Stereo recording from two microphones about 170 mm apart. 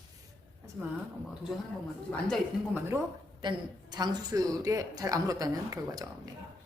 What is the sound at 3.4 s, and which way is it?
Speech, 25° right (ahead or behind).